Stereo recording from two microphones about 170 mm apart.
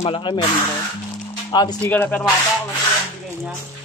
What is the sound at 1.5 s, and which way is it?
Speech, 25° left (ahead or behind).